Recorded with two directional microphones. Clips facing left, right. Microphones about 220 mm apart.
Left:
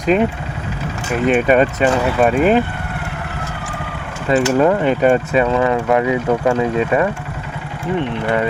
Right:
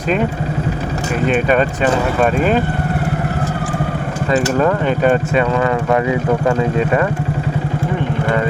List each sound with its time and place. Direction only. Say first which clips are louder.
2.2 s speech: left 3 dB; 5° left (ahead or behind)
4.6 s speech: left 1 dB; 10° left (ahead or behind)